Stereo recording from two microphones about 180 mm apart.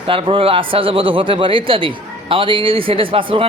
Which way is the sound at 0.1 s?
30° right (ahead or behind).